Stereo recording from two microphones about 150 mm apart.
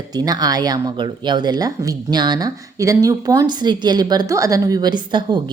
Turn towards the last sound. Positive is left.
turn(degrees=-30)  # may be behind; listen again after turning